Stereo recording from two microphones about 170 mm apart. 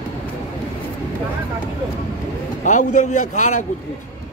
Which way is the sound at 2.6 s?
45° left (ahead or behind).